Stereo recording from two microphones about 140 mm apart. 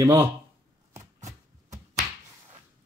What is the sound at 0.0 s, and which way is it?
Speech, 25° right (ahead or behind).